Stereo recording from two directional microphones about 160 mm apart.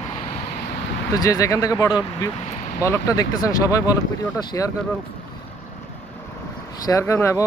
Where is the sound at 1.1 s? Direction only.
20° left (ahead or behind).